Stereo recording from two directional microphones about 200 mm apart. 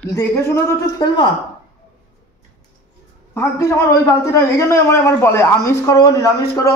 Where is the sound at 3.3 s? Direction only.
15° left (ahead or behind).